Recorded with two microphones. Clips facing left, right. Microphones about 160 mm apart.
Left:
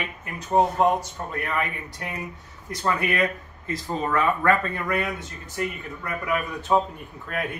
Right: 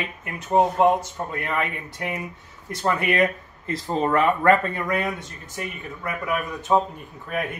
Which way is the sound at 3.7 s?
30° right (ahead or behind).